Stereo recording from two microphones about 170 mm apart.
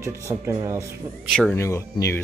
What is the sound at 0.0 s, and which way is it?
Speech, 15° right (ahead or behind).